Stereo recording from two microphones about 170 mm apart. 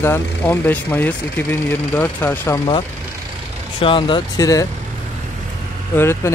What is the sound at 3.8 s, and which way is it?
Speech, 30° left (ahead or behind).